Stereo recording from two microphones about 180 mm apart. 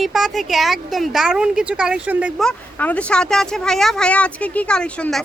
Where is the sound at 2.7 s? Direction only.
10° left (ahead or behind).